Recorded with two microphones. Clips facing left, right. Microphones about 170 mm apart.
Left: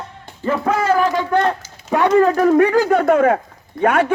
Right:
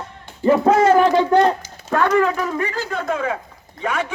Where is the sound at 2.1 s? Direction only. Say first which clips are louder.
Left 6 dB; 40° left (ahead or behind).